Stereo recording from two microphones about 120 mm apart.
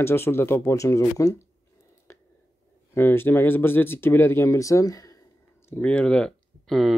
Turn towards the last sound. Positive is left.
turn(degrees=0)  # may be behind; listen again after turning